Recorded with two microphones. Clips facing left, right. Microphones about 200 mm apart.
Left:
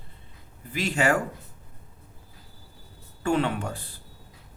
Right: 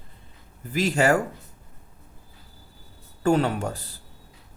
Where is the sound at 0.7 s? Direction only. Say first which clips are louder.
Right 3 dB; 40° right (ahead or behind).